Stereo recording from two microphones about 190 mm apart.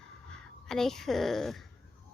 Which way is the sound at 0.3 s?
5° left (ahead or behind).